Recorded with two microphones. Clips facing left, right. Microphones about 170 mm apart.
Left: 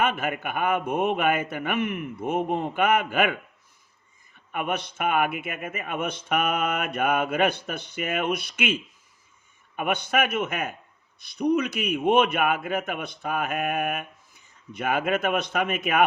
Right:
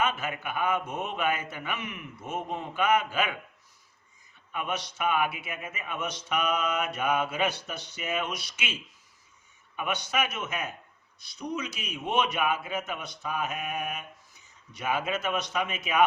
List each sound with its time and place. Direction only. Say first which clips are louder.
0.0 s speech: left 4 dB; 55° left (ahead or behind)
4.5 s speech: left 4 dB; 55° left (ahead or behind)